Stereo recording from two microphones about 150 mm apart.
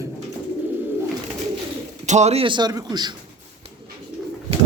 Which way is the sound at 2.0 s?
50° right (ahead or behind).